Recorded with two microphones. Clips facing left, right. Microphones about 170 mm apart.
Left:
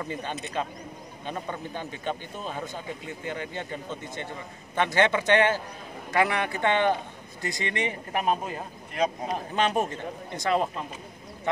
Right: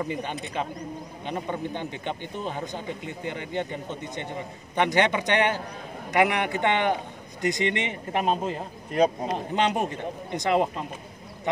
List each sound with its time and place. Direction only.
0.0 s a man's voice: 15° right (ahead or behind); by 9.1 s 30° right (ahead or behind)
9.6 s speech: 20° right (ahead or behind)